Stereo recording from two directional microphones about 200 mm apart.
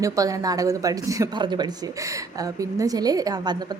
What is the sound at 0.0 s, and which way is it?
A woman's voice, 15° right (ahead or behind).